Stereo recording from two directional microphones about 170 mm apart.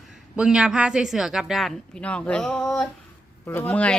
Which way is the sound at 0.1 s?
5° right (ahead or behind).